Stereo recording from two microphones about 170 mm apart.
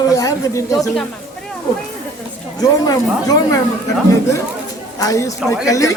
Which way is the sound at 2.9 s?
20° left (ahead or behind).